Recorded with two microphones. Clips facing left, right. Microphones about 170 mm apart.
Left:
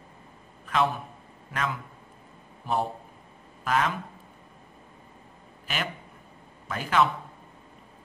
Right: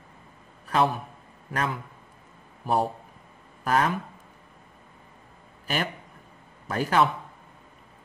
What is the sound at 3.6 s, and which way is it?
Speech, 35° right (ahead or behind).